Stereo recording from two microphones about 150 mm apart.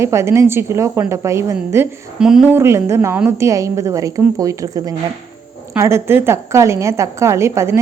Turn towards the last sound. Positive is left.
turn(degrees=-20)  # may be behind; listen again after turning